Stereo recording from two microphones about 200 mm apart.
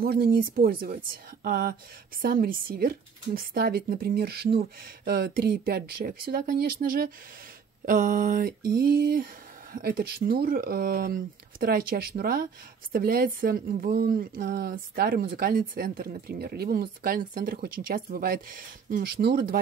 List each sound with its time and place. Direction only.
0.0 s speech: 45° right (ahead or behind)